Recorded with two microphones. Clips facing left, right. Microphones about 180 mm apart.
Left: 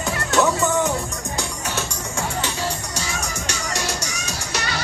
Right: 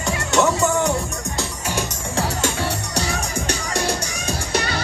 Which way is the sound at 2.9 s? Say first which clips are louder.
Right 4 dB; 60° right (ahead or behind).